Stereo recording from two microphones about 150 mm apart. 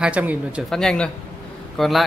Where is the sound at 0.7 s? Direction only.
5° left (ahead or behind).